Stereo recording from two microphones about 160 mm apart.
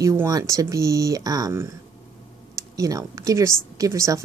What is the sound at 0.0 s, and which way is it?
A woman's voice, 20° right (ahead or behind).